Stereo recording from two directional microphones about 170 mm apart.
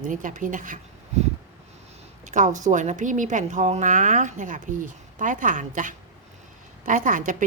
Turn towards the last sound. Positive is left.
turn(degrees=-50)  # may be behind; listen again after turning